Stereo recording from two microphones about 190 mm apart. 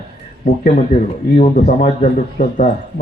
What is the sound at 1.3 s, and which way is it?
A man's voice, 40° left (ahead or behind).